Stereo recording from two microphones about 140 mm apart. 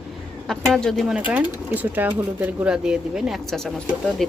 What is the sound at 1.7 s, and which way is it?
Speech, 15° right (ahead or behind).